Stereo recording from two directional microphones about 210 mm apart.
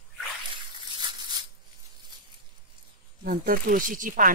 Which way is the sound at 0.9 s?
20° right (ahead or behind).